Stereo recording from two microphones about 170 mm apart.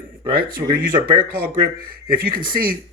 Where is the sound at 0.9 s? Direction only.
25° right (ahead or behind).